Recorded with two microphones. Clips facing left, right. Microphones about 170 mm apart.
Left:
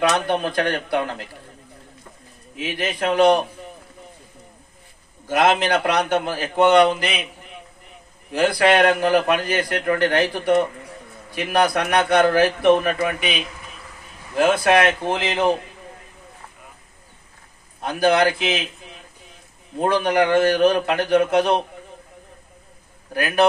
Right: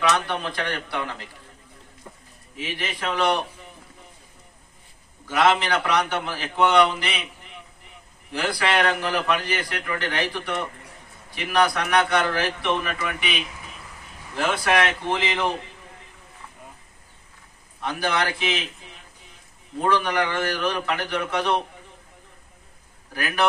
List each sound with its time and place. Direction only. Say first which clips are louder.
0.1 s a man's voice: left 5 dB; 50° left (ahead or behind)
2.6 s a man's voice: left 6 dB; 45° left (ahead or behind)
5.4 s a man's voice: left 2 dB; 45° left (ahead or behind)
8.3 s a man's voice: left 8 dB; 50° left (ahead or behind)
14.4 s a man's voice: left 6 dB; 45° left (ahead or behind)
17.7 s a man's voice: left 7 dB; 45° left (ahead or behind)
19.8 s a man's voice: left 4 dB; 50° left (ahead or behind)